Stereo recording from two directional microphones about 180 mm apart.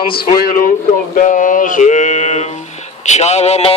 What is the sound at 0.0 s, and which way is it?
Mantra, 50° left (ahead or behind).